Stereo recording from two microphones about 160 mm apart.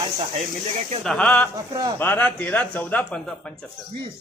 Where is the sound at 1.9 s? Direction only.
10° left (ahead or behind).